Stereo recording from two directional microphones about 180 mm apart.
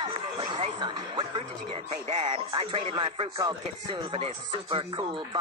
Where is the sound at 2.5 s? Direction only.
25° right (ahead or behind).